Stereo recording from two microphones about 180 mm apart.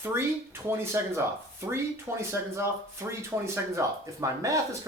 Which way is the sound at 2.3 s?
15° right (ahead or behind).